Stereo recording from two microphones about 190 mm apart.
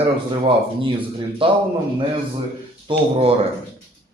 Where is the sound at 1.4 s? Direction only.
30° right (ahead or behind).